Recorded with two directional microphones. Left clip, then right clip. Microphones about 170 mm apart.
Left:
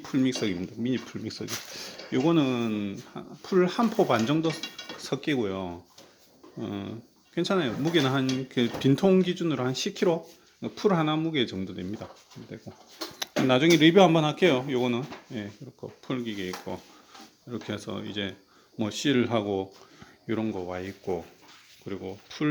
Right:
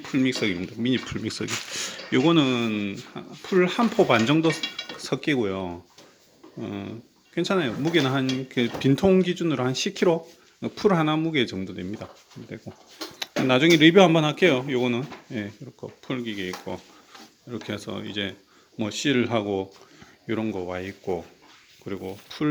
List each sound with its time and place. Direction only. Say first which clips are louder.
0.0 s speech: right 3 dB; centre (ahead or behind)
0.8 s speech: right 5 dB; 10° right (ahead or behind)
4.0 s speech: right 6 dB; 15° right (ahead or behind)
6.6 s speech: right 1 dB; 5° left (ahead or behind)
12.7 s speech: right 3 dB; 20° right (ahead or behind)
13.5 s speech: right 3 dB; centre (ahead or behind)
15.3 s speech: right 5 dB; 20° right (ahead or behind)
15.8 s speech: right 2 dB; centre (ahead or behind)